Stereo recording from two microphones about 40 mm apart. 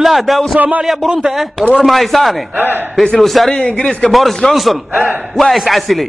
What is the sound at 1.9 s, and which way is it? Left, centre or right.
Speech, centre.